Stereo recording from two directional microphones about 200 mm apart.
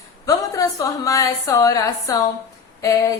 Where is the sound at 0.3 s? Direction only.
15° left (ahead or behind).